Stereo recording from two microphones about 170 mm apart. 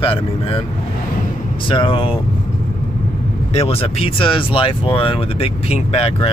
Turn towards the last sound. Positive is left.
turn(degrees=35)  # may be behind; listen again after turning